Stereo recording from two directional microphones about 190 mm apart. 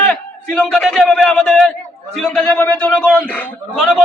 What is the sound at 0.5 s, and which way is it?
A man's voice, 5° left (ahead or behind).